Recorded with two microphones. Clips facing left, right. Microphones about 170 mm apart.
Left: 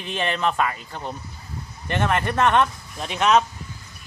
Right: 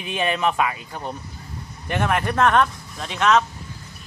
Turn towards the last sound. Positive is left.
turn(degrees=15)  # may be behind; listen again after turning